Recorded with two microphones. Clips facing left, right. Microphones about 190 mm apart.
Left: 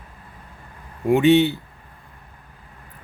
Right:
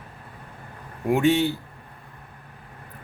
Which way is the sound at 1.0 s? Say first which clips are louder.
Left 5 dB; centre (ahead or behind).